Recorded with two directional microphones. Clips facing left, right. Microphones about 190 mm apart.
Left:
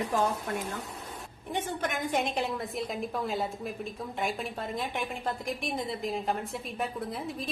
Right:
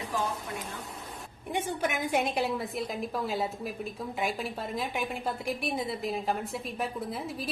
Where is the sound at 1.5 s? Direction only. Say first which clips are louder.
Right 2 dB; 10° right (ahead or behind).